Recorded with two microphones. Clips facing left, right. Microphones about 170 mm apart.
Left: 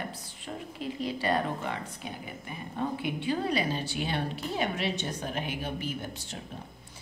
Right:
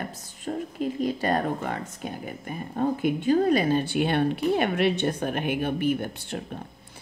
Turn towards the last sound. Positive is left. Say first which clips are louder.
# right 10 dB
turn(degrees=-60)  # may be behind; listen again after turning